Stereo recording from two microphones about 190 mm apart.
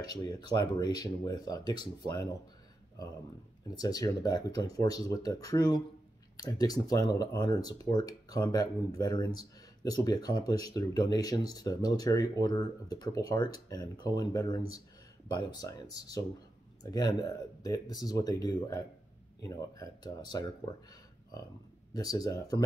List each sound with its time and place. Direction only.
0.1 s speech: 20° left (ahead or behind)
3.7 s speech: 20° left (ahead or behind)
21.9 s speech: 20° left (ahead or behind)